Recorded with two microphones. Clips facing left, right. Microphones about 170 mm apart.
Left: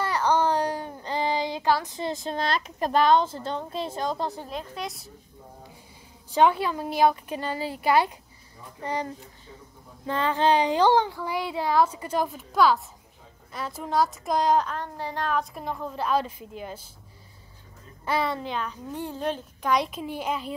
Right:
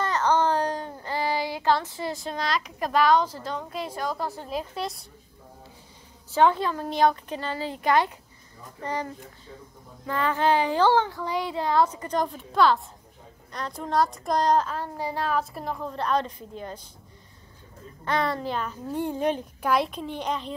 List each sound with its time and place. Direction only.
0.0 s speech: 10° left (ahead or behind)
4.5 s a child's voice: 5° right (ahead or behind)
6.3 s a child's voice: 15° left (ahead or behind)
18.0 s a child's voice: 5° left (ahead or behind)